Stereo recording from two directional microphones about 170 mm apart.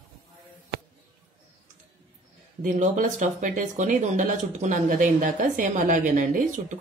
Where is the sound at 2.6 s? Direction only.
50° right (ahead or behind).